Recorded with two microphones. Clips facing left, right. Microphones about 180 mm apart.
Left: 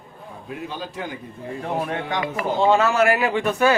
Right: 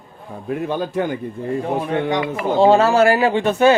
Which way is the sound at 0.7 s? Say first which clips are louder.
Right 12 dB; 55° right (ahead or behind).